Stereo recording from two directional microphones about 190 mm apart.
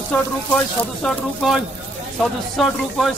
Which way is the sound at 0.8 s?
Centre (ahead or behind).